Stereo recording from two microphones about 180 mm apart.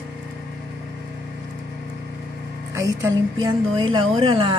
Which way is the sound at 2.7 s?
15° right (ahead or behind).